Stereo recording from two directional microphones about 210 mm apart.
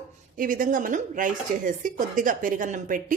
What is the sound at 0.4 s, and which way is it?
A woman's voice, 40° right (ahead or behind).